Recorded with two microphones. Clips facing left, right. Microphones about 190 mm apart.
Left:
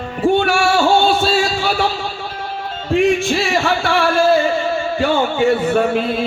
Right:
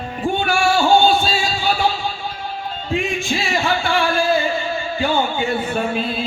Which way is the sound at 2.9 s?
70° left (ahead or behind).